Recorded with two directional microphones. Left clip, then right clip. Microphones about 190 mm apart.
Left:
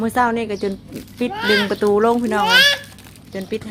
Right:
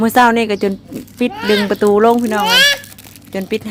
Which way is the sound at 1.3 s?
15° right (ahead or behind).